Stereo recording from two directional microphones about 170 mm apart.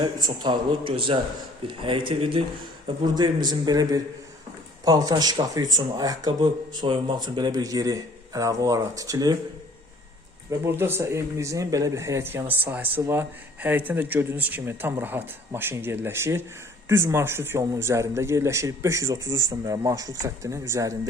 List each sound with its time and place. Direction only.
0.0 s speech: 25° right (ahead or behind)
10.7 s speech: 15° right (ahead or behind)